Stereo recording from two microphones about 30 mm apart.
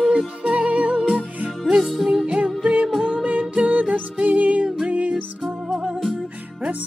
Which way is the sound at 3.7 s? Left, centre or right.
Right.